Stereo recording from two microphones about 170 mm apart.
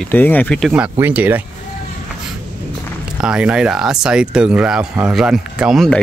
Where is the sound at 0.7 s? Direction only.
10° right (ahead or behind).